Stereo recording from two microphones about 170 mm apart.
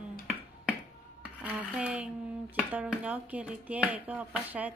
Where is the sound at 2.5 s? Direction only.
10° right (ahead or behind).